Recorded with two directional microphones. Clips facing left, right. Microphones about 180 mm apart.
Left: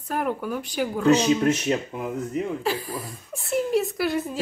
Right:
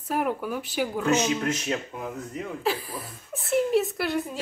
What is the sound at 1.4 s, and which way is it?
Speech, 25° left (ahead or behind).